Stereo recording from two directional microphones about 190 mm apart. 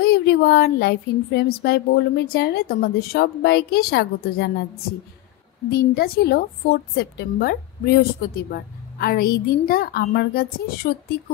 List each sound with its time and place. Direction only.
0.0 s speech: 55° left (ahead or behind)
5.7 s a woman's voice: 50° left (ahead or behind)